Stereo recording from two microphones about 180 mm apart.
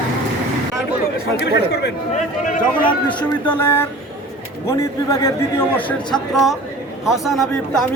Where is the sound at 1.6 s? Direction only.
65° left (ahead or behind).